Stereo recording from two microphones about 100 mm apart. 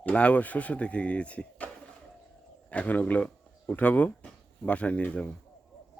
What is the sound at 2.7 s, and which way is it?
Speech, 15° left (ahead or behind).